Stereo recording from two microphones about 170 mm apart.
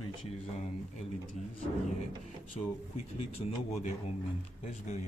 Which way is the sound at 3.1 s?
40° left (ahead or behind).